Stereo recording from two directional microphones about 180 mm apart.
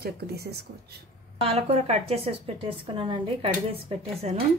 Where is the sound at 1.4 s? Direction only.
35° right (ahead or behind).